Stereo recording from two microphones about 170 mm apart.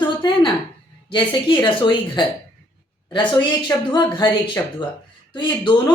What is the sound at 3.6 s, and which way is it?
Speech, 25° left (ahead or behind).